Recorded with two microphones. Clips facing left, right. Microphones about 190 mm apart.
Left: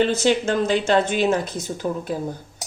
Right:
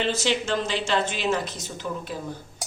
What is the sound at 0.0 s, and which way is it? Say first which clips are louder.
Speech: left 6 dB; 50° left (ahead or behind).